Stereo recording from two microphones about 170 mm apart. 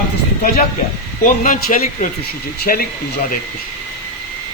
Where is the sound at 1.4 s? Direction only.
50° left (ahead or behind).